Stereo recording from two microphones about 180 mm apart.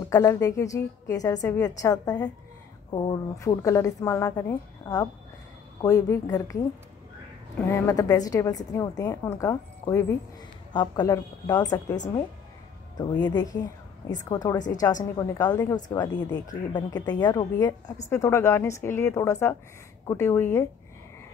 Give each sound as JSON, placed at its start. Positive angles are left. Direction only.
{"t": 0.1, "sound": "a woman's voice", "side_deg": 15}
{"t": 3.3, "sound": "a woman's voice", "side_deg": 15}
{"t": 7.7, "sound": "a woman's voice", "side_deg": 20}
{"t": 13.2, "sound": "a woman's voice", "side_deg": 20}